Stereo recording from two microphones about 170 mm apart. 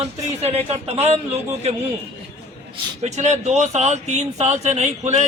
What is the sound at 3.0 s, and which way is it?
Speech, 40° right (ahead or behind).